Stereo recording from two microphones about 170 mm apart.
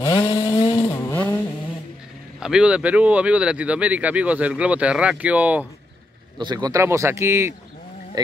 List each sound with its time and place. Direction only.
0.0 s chainsaw: 20° left (ahead or behind)
0.7 s vehicle: 15° left (ahead or behind)
2.4 s speech: 5° right (ahead or behind)
6.3 s speech: 25° right (ahead or behind)